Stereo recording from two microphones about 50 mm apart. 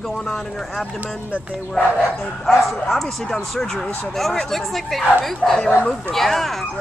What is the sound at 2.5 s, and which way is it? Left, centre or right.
Speech, centre.